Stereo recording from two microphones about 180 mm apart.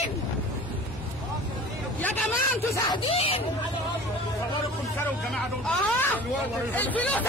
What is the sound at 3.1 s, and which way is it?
Speech, 30° left (ahead or behind).